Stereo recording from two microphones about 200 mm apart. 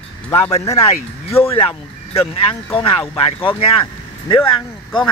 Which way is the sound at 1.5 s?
30° left (ahead or behind).